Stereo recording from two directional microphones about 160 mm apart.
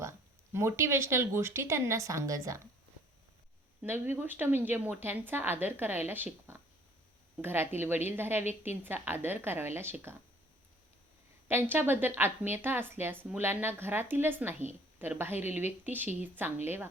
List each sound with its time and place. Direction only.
0.5 s a woman's voice: 15° right (ahead or behind)
3.8 s a woman's voice: 15° right (ahead or behind)
11.4 s a woman's voice: 15° right (ahead or behind)